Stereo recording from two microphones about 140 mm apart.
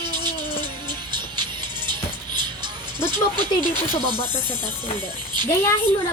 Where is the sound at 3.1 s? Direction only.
30° right (ahead or behind).